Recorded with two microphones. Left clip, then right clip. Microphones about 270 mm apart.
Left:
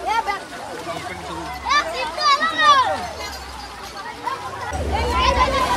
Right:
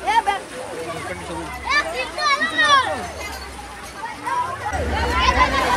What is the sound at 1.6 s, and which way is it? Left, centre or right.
Children playing, left.